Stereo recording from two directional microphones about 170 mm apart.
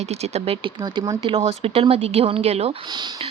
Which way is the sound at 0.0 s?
40° right (ahead or behind).